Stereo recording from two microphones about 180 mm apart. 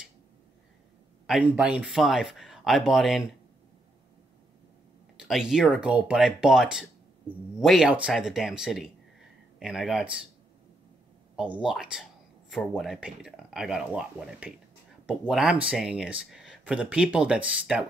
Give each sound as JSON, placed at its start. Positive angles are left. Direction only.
{"t": 1.2, "sound": "speech", "side_deg": -5}
{"t": 5.2, "sound": "speech", "side_deg": -5}
{"t": 11.3, "sound": "speech", "side_deg": -5}